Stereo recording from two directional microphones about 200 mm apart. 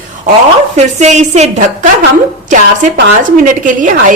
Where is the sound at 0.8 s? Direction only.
35° right (ahead or behind).